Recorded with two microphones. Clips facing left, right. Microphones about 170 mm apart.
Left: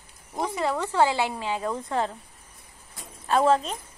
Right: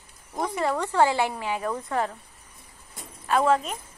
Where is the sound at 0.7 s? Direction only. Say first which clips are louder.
Right 1 dB; 15° left (ahead or behind).